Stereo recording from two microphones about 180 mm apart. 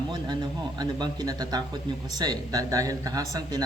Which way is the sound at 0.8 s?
25° right (ahead or behind).